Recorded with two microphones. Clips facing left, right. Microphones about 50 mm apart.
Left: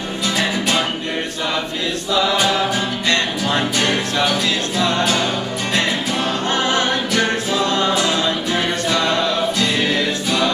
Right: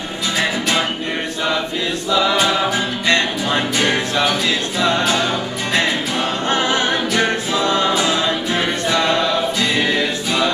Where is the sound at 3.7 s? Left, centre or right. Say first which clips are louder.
Right 1 dB; centre.